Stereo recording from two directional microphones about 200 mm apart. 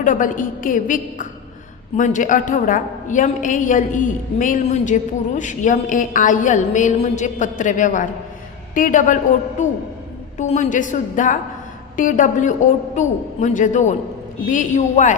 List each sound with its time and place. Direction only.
0.0 s a woman's voice: 40° left (ahead or behind)